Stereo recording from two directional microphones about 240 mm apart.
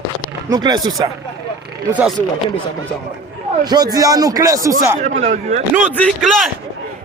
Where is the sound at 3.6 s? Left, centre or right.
Centre.